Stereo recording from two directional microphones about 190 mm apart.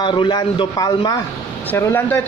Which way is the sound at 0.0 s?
25° left (ahead or behind).